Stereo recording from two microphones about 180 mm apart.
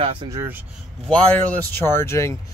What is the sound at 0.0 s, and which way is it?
Speech, 30° right (ahead or behind).